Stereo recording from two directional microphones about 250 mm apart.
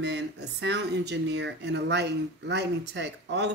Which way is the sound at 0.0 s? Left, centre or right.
Right.